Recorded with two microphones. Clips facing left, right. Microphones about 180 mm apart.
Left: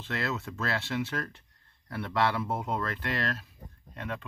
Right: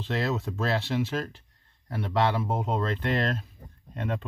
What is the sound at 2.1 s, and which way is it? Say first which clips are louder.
Speech: right 3 dB; 20° right (ahead or behind).